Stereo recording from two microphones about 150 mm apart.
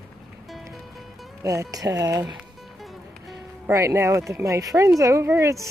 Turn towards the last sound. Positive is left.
turn(degrees=-20)  # may be behind; listen again after turning